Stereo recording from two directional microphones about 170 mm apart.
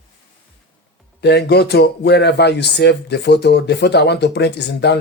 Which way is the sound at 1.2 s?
80° left.